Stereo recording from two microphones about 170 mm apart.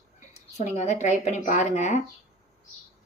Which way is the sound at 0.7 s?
40° left (ahead or behind).